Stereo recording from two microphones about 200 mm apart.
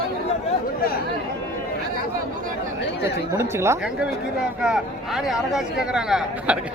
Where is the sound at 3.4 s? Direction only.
15° right (ahead or behind).